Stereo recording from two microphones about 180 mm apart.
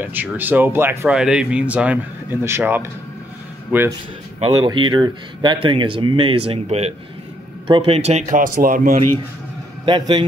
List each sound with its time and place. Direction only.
0.0 s speech: 10° right (ahead or behind)
4.4 s speech: 25° right (ahead or behind); by 9.0 s 45° right (ahead or behind)
9.8 s speech: 25° right (ahead or behind)